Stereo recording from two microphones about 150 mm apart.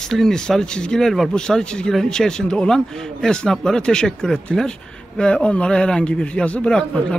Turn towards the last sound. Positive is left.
turn(degrees=5)  # may be behind; listen again after turning